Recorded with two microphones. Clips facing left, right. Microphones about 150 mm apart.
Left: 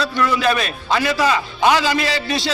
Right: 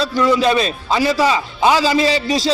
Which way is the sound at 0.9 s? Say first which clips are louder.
Right 2 dB; 10° right (ahead or behind).